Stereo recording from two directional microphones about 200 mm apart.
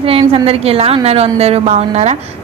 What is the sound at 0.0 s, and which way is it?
A woman's voice, 30° right (ahead or behind).